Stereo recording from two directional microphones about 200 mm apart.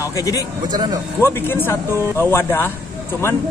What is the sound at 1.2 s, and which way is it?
Speech, 10° left (ahead or behind).